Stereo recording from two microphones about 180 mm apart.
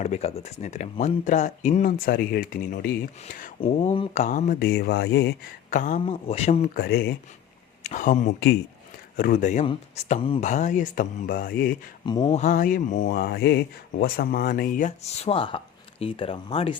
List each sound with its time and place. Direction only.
0.0 s speech: 35° left (ahead or behind)
3.6 s speech: 30° left (ahead or behind)
4.2 s speech: 45° left (ahead or behind); by 5.3 s 70° left (ahead or behind)
5.7 s speech: 45° left (ahead or behind)
6.1 s speech: 35° left (ahead or behind)
6.7 s speech: 60° left (ahead or behind)
7.9 s speech: 45° left (ahead or behind)
12.0 s speech: 25° left (ahead or behind)
12.3 s speech: 40° left (ahead or behind)